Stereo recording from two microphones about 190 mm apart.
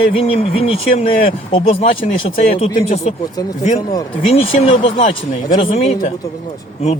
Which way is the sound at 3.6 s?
40° left (ahead or behind).